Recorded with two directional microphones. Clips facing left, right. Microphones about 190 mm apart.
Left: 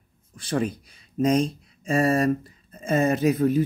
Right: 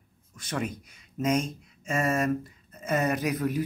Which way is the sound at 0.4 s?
30° left (ahead or behind).